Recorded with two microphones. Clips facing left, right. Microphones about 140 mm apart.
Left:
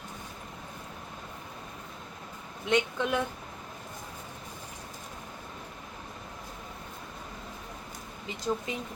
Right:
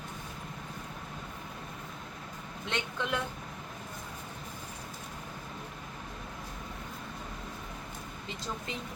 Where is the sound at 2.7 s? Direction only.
15° left (ahead or behind).